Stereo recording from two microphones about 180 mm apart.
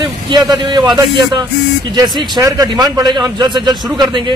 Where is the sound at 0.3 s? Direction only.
25° right (ahead or behind).